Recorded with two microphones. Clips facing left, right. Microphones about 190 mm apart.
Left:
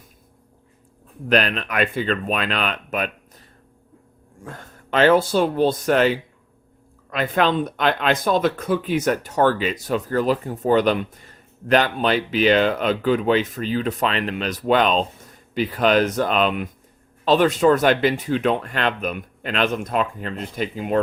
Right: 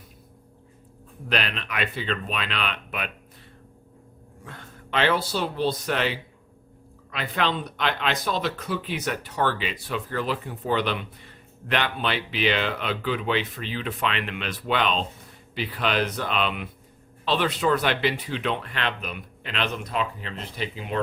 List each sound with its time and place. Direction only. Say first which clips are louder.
1.3 s speech: left 8 dB; 45° left (ahead or behind)
4.4 s speech: left 5 dB; 45° left (ahead or behind)